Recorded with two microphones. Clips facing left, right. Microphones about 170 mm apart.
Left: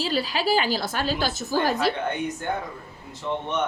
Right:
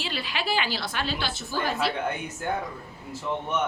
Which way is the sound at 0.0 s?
40° left (ahead or behind).